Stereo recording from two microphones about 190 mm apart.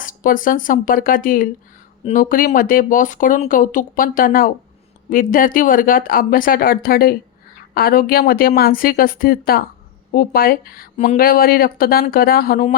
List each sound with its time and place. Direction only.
0.0 s speech: 45° left (ahead or behind)
11.2 s speech: 50° left (ahead or behind)